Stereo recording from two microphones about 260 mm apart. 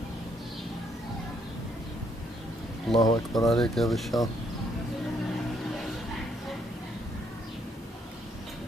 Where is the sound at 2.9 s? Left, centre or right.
Centre.